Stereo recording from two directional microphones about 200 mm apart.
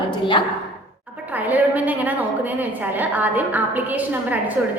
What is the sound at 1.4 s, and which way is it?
A woman's voice, 10° right (ahead or behind).